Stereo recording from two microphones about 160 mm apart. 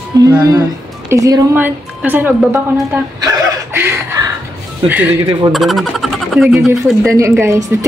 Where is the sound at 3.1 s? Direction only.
25° right (ahead or behind).